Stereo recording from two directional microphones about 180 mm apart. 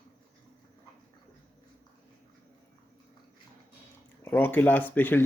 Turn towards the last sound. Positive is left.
turn(degrees=10)  # may be behind; listen again after turning